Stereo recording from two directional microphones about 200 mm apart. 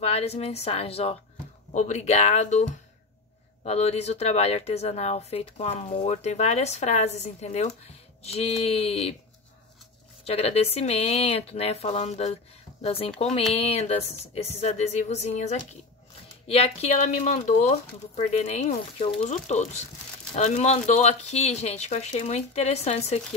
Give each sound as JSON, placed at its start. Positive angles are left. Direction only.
{"t": 0.0, "sound": "speech", "side_deg": 30}
{"t": 10.2, "sound": "speech", "side_deg": 30}